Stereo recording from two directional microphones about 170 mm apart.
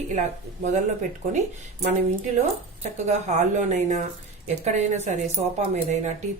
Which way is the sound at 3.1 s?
45° right (ahead or behind).